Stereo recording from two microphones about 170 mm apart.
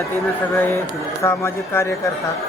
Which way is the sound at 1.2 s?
15° left (ahead or behind).